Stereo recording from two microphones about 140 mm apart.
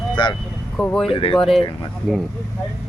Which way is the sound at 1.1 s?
40° left (ahead or behind).